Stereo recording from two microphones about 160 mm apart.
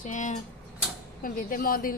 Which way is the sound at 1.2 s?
60° left (ahead or behind).